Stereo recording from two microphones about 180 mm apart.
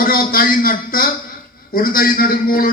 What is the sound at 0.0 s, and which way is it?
A man's voice, 55° left (ahead or behind).